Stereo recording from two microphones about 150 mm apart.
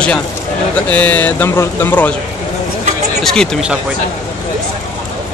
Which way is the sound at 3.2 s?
5° left (ahead or behind).